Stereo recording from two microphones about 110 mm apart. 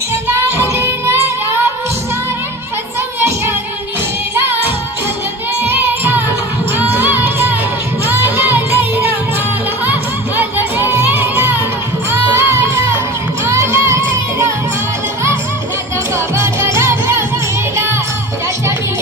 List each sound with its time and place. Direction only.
0.1 s child singing: 25° right (ahead or behind)
3.2 s music: 20° right (ahead or behind)
5.6 s music: 20° right (ahead or behind)
10.3 s music: 20° right (ahead or behind)
16.1 s music: 25° right (ahead or behind)